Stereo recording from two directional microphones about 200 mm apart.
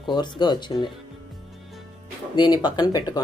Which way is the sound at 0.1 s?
20° left (ahead or behind).